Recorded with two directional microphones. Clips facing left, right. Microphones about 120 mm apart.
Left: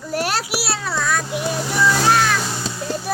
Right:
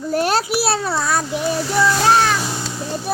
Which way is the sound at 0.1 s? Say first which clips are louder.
Right 4 dB; 25° right (ahead or behind).